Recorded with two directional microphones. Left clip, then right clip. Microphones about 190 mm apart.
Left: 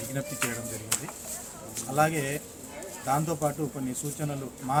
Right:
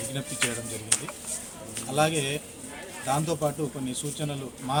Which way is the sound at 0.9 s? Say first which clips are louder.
Right 4 dB; 55° left (ahead or behind).